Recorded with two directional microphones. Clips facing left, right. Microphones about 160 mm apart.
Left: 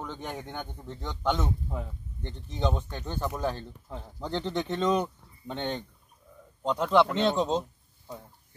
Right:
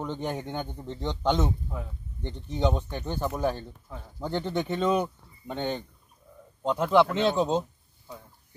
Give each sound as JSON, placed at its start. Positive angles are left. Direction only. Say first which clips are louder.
{"t": 0.0, "sound": "a man's voice", "louder": "right 5 dB", "side_deg": -15}